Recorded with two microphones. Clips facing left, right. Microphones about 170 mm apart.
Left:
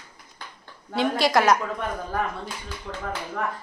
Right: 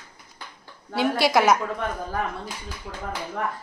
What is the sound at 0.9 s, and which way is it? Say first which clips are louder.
Speech: right 1 dB; 5° right (ahead or behind).